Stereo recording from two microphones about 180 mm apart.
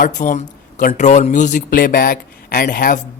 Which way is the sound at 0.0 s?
40° left (ahead or behind).